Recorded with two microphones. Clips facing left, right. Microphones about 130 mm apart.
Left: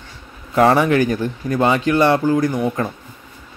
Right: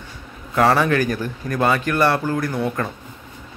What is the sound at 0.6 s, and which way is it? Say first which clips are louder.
Speech: left 3 dB; 20° left (ahead or behind).